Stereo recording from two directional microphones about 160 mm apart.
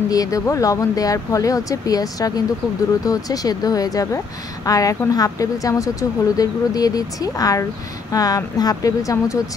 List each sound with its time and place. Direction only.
0.1 s speech: 20° left (ahead or behind)